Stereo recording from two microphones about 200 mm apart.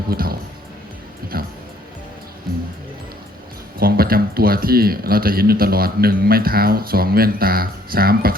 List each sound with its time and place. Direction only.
0.1 s speech: 50° right (ahead or behind)
1.3 s music: 50° right (ahead or behind)
3.8 s speech: 50° right (ahead or behind)